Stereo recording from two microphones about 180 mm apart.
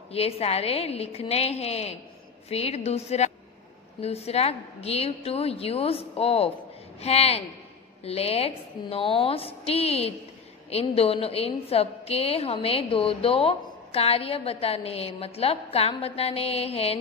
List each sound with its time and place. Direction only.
0.1 s a woman's voice: 35° left (ahead or behind)